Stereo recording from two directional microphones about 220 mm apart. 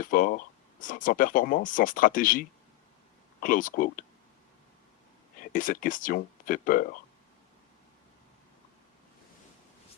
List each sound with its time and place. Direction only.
0.0 s speech: 40° left (ahead or behind)
5.4 s speech: 35° left (ahead or behind)